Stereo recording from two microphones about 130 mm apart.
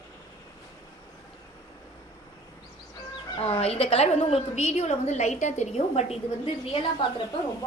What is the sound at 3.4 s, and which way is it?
A woman's voice, 50° left (ahead or behind).